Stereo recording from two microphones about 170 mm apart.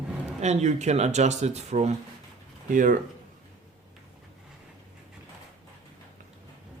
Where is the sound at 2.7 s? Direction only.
50° right (ahead or behind).